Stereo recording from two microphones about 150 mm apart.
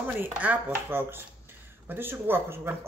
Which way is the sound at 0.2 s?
10° right (ahead or behind).